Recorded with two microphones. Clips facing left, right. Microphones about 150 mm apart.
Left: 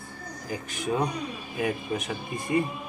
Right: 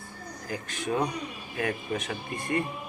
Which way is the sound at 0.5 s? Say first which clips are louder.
Left 1 dB; 10° left (ahead or behind).